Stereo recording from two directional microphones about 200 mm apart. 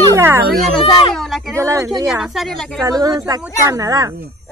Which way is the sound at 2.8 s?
20° right (ahead or behind).